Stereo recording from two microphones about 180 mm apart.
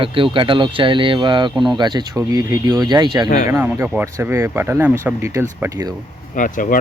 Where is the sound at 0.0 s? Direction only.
30° right (ahead or behind).